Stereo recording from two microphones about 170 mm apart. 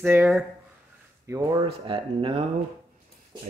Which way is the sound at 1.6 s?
30° right (ahead or behind).